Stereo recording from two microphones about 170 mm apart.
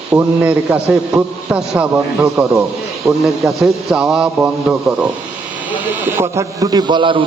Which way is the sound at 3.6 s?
5° right (ahead or behind).